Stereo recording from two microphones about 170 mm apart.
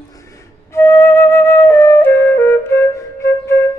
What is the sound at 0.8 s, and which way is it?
Flute, 15° left (ahead or behind).